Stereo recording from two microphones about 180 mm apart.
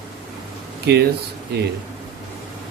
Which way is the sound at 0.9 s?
65° right (ahead or behind).